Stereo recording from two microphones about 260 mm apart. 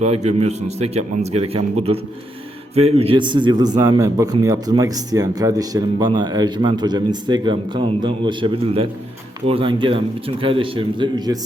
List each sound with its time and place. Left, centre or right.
0.0 s a man's voice: right